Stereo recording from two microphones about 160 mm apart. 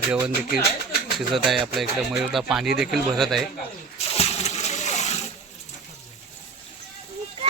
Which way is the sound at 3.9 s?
40° left (ahead or behind).